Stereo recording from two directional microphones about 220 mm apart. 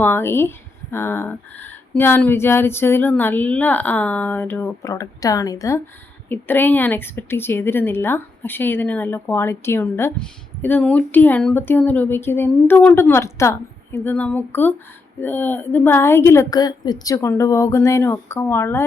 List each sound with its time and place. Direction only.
0.0 s a woman's voice: 10° left (ahead or behind)